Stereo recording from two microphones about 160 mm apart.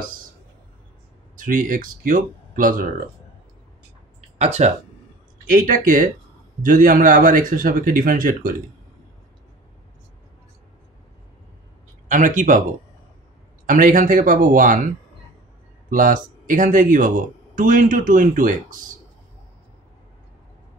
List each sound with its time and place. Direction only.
1.4 s speech: 60° right (ahead or behind)
4.4 s speech: 45° right (ahead or behind)
5.5 s speech: 55° right (ahead or behind)
12.1 s speech: 55° right (ahead or behind)
13.7 s speech: 55° right (ahead or behind)
15.9 s speech: 55° right (ahead or behind)